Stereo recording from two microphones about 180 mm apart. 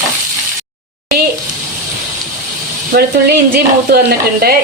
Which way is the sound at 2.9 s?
65° right (ahead or behind).